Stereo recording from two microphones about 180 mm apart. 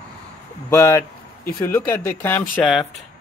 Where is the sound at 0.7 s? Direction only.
15° left (ahead or behind); by 3.0 s centre (ahead or behind).